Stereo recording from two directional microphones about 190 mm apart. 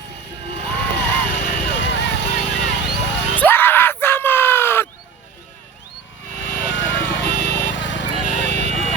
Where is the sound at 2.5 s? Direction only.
65° left (ahead or behind).